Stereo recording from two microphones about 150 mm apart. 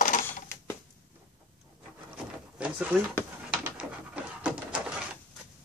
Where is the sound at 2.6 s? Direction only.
10° right (ahead or behind).